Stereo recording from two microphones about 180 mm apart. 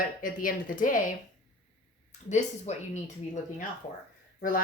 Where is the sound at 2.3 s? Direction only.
40° left (ahead or behind).